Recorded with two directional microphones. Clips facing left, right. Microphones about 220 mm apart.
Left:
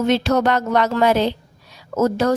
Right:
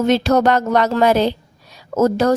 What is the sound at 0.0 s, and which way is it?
A woman's voice, 40° right (ahead or behind).